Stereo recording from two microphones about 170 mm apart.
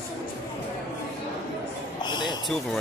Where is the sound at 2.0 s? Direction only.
25° left (ahead or behind).